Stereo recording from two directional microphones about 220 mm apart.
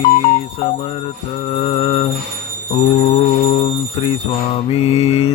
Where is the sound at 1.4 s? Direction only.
25° left (ahead or behind).